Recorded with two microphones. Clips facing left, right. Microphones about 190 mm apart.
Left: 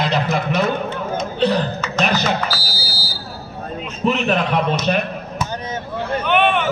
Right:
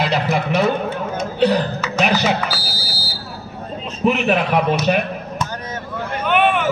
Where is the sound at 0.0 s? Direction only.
10° right (ahead or behind).